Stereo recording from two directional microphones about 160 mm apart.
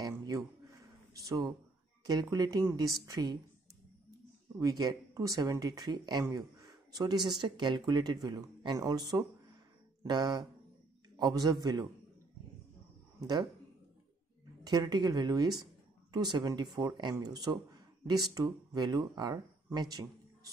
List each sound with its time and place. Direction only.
0.0 s a sound: 20° right (ahead or behind)
1.1 s speech: 20° right (ahead or behind)
4.6 s speech: 20° right (ahead or behind)
13.2 s speech: 25° right (ahead or behind)
14.6 s speech: 25° right (ahead or behind)